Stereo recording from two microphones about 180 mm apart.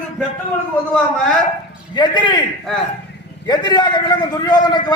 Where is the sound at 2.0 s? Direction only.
25° left (ahead or behind).